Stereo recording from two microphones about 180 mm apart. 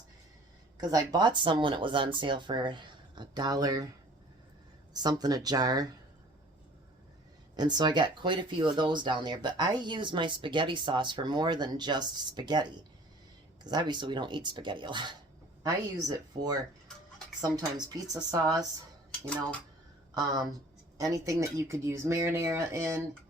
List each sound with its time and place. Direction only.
0.8 s speech: 20° right (ahead or behind)
5.0 s speech: 20° right (ahead or behind)
7.5 s speech: 25° right (ahead or behind)
13.7 s speech: 25° right (ahead or behind)
19.2 s speech: 5° left (ahead or behind)
20.1 s speech: 20° right (ahead or behind)